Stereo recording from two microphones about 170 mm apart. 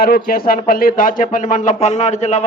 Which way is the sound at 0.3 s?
60° left (ahead or behind).